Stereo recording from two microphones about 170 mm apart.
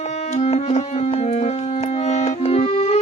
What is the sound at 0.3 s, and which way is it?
Music, 40° left (ahead or behind).